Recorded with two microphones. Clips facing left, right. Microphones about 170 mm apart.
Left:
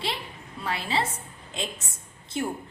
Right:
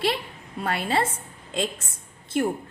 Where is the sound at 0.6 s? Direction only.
55° right (ahead or behind).